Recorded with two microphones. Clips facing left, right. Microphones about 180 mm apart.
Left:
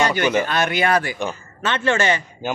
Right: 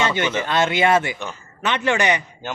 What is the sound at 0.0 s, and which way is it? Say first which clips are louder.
A man's voice: left 3 dB; 25° right (ahead or behind).